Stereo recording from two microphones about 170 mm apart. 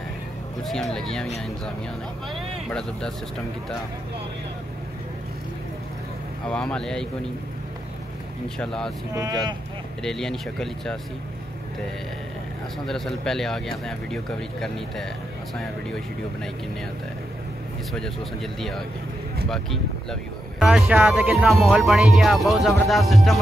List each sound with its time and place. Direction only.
0.7 s speech: centre (ahead or behind)
6.5 s speech: 5° left (ahead or behind)
8.5 s speech: 5° left (ahead or behind)
9.1 s speech: 25° right (ahead or behind)
10.0 s speech: 5° left (ahead or behind)
12.8 s speech: 5° left (ahead or behind)
17.9 s speech: centre (ahead or behind)